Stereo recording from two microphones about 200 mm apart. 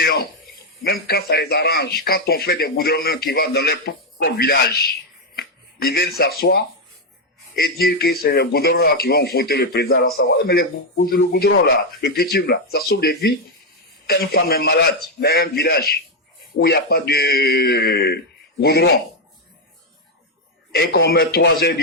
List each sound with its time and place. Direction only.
0.0 s a man's voice: 50° left (ahead or behind)
20.7 s a man's voice: 55° left (ahead or behind)